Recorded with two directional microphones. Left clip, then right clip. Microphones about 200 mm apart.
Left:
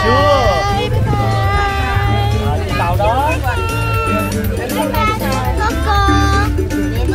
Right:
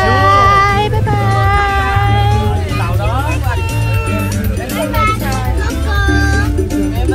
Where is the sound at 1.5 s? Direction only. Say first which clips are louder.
Right 4 dB; 5° right (ahead or behind).